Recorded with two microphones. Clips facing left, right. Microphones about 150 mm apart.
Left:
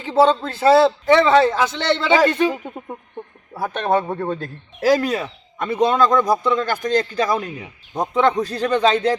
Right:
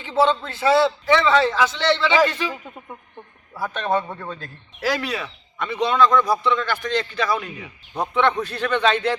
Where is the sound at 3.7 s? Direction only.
60° left (ahead or behind).